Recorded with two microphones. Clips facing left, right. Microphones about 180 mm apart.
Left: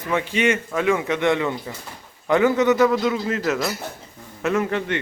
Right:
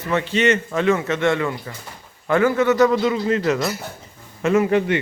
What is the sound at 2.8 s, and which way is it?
A man's voice, centre (ahead or behind).